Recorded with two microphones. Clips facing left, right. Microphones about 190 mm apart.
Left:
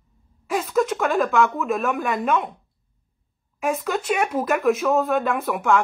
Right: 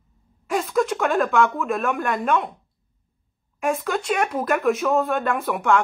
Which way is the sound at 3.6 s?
Centre (ahead or behind).